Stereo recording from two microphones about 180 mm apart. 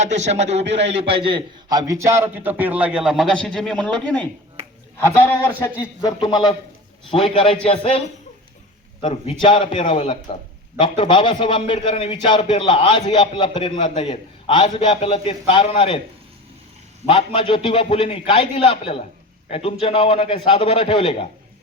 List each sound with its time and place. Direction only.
0.0 s a man's voice: 40° right (ahead or behind); by 16.0 s 25° left (ahead or behind)
17.1 s a man's voice: 30° left (ahead or behind)